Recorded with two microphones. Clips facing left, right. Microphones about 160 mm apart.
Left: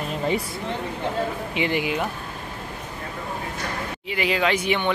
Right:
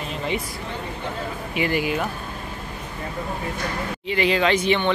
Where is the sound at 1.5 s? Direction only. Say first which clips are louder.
Right 4 dB; 20° left (ahead or behind).